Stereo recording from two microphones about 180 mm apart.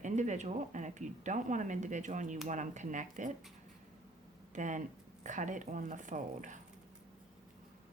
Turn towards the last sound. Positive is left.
turn(degrees=-45)  # may be behind; listen again after turning